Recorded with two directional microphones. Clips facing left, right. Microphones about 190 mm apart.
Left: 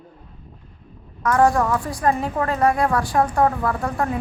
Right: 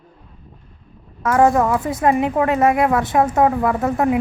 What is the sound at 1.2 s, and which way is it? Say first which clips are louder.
A woman's voice: right 3 dB; 25° right (ahead or behind).